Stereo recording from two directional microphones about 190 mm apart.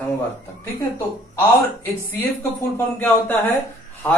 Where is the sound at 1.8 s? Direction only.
15° left (ahead or behind).